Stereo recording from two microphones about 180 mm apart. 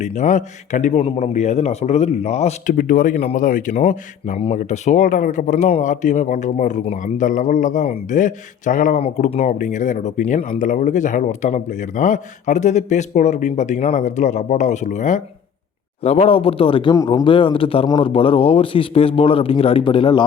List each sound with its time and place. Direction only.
0.0 s a man's voice: 40° left (ahead or behind)
2.7 s a man's voice: 50° left (ahead or behind); by 20.2 s 30° left (ahead or behind)